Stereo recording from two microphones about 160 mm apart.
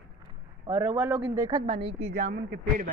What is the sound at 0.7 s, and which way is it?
Speech, 10° right (ahead or behind).